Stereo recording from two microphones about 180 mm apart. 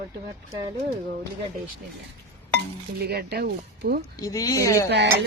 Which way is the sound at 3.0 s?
60° right (ahead or behind).